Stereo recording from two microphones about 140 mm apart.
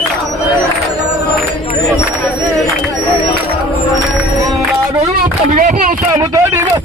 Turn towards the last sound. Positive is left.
turn(degrees=-25)  # may be behind; listen again after turning